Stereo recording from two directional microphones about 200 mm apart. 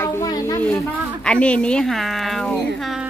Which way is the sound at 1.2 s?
5° left (ahead or behind).